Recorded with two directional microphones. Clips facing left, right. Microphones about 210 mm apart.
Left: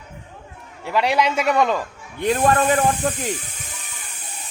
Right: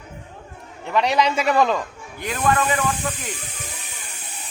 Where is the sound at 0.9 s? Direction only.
5° left (ahead or behind).